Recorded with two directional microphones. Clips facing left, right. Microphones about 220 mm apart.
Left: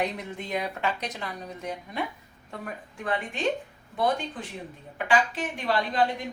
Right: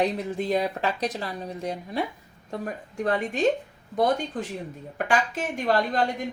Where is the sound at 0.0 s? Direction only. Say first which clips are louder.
Right 6 dB; 35° right (ahead or behind).